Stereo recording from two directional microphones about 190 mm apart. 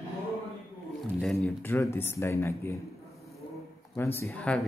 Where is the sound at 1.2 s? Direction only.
5° left (ahead or behind).